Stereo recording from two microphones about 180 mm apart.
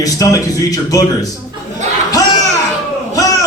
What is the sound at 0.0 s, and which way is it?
A man's voice, 20° left (ahead or behind).